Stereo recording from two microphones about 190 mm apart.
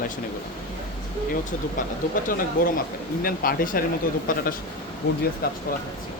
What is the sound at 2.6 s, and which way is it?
Speech, 45° left (ahead or behind).